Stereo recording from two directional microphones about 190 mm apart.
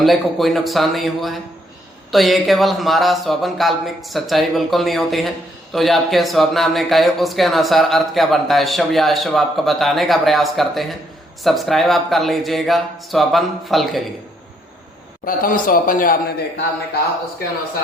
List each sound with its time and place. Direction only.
0.0 s speech: centre (ahead or behind)
15.2 s a man's voice: 45° left (ahead or behind)